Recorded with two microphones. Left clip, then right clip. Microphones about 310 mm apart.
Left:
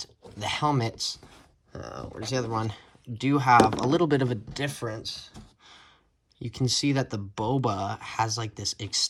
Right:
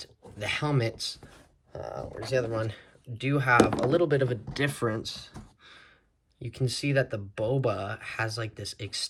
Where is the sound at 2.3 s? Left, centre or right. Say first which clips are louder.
Right 1 dB; centre.